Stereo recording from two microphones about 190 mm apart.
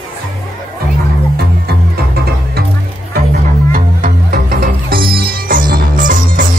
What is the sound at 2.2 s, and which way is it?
Music, 55° right (ahead or behind).